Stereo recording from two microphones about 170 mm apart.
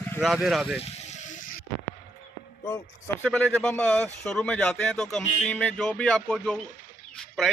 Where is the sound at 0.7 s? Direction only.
40° left (ahead or behind).